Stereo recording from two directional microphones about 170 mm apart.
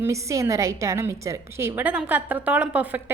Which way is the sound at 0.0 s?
15° right (ahead or behind).